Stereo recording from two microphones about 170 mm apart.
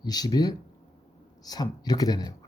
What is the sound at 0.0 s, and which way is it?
Speech, 25° left (ahead or behind).